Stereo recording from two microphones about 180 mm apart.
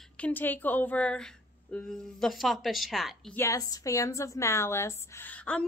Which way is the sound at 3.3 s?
15° left (ahead or behind).